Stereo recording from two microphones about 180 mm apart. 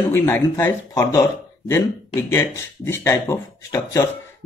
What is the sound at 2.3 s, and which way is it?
Speech, 15° left (ahead or behind).